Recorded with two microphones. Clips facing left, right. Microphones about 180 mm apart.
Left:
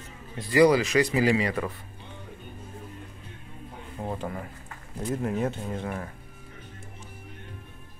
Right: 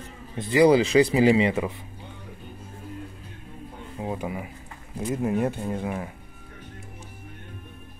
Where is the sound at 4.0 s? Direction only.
10° right (ahead or behind).